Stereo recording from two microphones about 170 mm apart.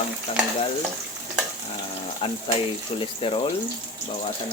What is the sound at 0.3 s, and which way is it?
Speech, 35° left (ahead or behind).